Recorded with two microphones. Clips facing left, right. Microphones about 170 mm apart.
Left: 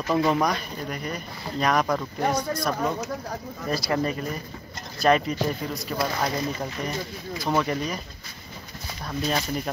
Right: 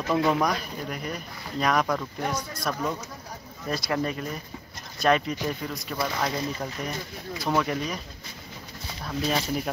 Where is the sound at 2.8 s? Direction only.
75° left (ahead or behind).